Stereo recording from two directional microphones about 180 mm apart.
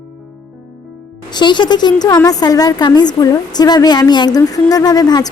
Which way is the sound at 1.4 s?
25° left (ahead or behind).